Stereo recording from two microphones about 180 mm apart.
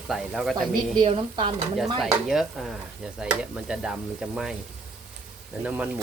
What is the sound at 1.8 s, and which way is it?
Frying, centre (ahead or behind).